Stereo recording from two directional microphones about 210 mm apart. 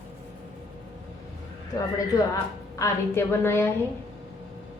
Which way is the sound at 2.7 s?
15° left (ahead or behind).